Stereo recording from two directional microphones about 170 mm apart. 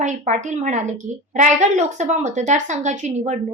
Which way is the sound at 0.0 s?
45° right (ahead or behind).